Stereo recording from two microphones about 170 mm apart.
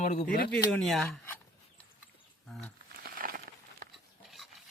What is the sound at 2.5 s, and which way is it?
Speech, 5° left (ahead or behind).